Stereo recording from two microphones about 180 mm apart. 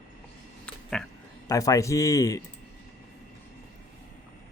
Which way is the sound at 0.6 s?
5° left (ahead or behind).